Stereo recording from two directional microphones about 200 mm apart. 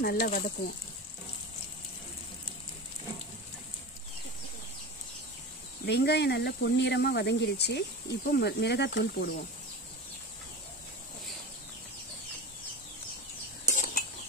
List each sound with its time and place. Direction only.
0.0 s speech: 50° left (ahead or behind)
5.9 s speech: 55° left (ahead or behind)
13.7 s a sound: 40° left (ahead or behind)